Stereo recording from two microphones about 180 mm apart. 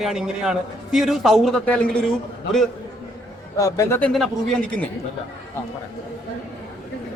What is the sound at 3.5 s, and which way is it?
Speech, 15° left (ahead or behind).